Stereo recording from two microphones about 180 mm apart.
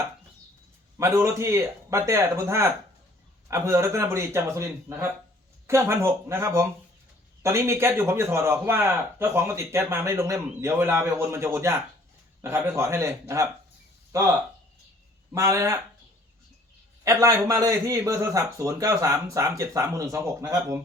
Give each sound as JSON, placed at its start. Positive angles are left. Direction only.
{"t": 0.9, "sound": "a man's voice", "side_deg": -15}
{"t": 15.4, "sound": "a man's voice", "side_deg": -15}
{"t": 17.0, "sound": "a man's voice", "side_deg": -15}